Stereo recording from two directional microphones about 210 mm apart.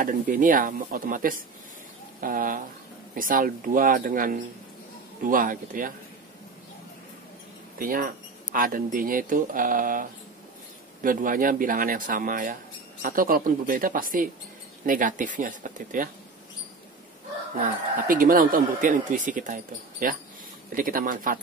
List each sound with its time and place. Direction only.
0.0 s speech: 40° right (ahead or behind)
7.8 s speech: 40° right (ahead or behind)
17.6 s speech: 40° right (ahead or behind)